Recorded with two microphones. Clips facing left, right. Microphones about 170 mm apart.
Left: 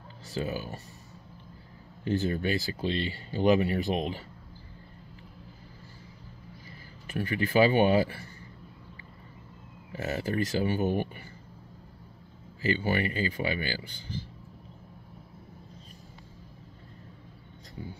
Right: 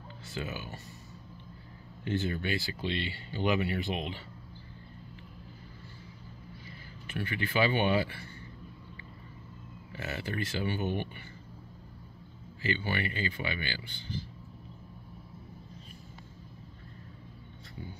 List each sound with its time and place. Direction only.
0.3 s speech: 35° left (ahead or behind)
2.0 s speech: 40° left (ahead or behind)
7.1 s speech: 40° left (ahead or behind)
9.9 s speech: 40° left (ahead or behind)
12.6 s speech: 40° left (ahead or behind)